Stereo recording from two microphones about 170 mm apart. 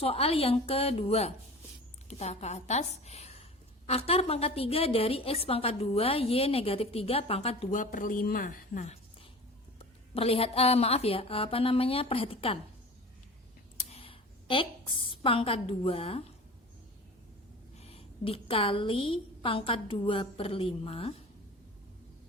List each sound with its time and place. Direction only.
0.0 s a woman's voice: 35° left (ahead or behind)
7.7 s a woman's voice: 50° left (ahead or behind); by 12.5 s 35° left (ahead or behind)
13.9 s a woman's voice: 30° left (ahead or behind)
17.7 s a woman's voice: 35° left (ahead or behind)